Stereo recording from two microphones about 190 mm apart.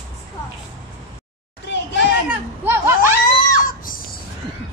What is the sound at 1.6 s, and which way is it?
Children playing, 65° left (ahead or behind).